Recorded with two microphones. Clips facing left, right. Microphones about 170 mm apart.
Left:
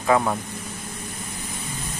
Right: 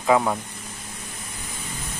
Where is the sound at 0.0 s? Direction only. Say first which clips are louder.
Right 1 dB; 5° right (ahead or behind).